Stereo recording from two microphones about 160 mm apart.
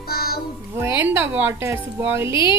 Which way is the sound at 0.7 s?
15° right (ahead or behind).